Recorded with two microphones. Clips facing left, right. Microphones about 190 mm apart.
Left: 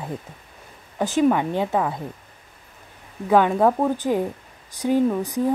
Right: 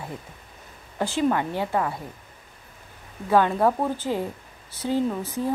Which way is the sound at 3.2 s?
15° left (ahead or behind).